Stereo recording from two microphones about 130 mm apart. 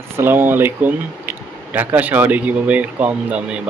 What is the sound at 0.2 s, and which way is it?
Speech, 15° right (ahead or behind).